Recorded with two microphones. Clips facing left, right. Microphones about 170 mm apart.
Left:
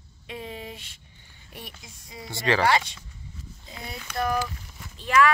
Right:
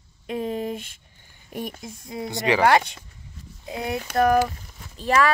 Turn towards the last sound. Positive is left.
turn(degrees=-40)  # may be behind; listen again after turning